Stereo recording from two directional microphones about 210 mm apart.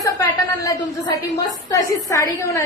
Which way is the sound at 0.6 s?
15° left (ahead or behind).